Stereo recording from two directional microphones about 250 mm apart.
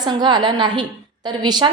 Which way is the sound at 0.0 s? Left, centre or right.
Centre.